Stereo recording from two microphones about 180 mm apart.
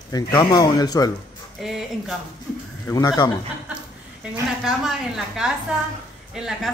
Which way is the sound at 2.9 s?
20° left (ahead or behind).